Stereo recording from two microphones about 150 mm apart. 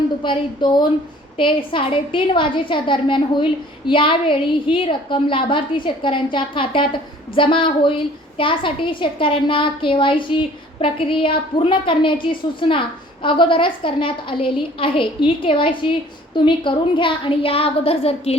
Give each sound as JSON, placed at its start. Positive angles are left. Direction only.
{"t": 0.2, "sound": "a woman's voice", "side_deg": 30}